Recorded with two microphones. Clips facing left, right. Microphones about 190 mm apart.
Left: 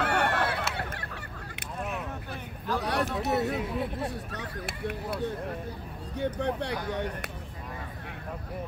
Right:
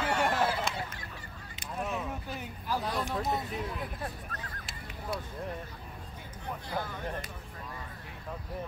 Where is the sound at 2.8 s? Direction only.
75° left (ahead or behind).